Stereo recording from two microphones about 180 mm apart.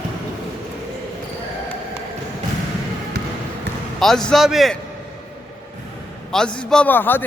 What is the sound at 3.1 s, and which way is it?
Basketball bounce, 65° right (ahead or behind).